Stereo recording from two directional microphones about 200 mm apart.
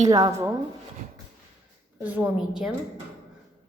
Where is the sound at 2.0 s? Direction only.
10° right (ahead or behind).